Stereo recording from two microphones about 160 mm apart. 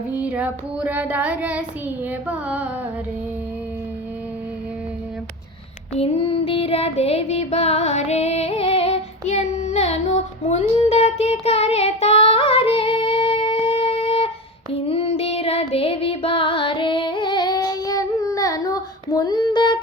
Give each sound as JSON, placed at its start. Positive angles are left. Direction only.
{"t": 0.1, "sound": "child singing", "side_deg": -10}
{"t": 5.9, "sound": "child singing", "side_deg": 35}